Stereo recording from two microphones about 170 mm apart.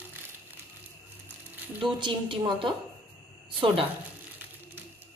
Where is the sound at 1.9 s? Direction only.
30° right (ahead or behind).